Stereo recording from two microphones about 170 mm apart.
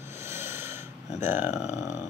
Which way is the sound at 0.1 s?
15° right (ahead or behind).